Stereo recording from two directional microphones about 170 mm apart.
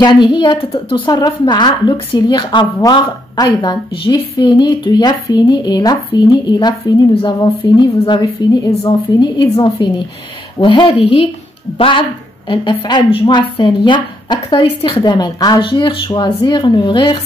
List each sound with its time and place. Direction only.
0.0 s a woman's voice: 25° left (ahead or behind)